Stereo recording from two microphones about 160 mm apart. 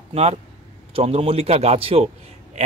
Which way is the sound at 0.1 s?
40° right (ahead or behind).